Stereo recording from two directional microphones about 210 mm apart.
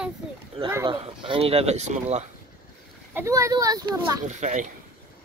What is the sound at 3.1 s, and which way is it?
Speech, 15° right (ahead or behind).